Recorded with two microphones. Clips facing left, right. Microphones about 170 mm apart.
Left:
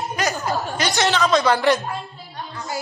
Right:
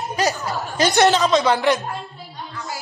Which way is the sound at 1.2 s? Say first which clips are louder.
Even; 20° right (ahead or behind).